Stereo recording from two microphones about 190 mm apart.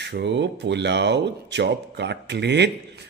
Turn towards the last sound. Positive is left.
turn(degrees=-65)  # may be behind; listen again after turning